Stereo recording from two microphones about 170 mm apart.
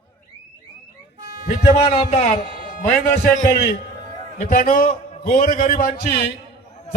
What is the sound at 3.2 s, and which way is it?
A man's voice, 55° left (ahead or behind).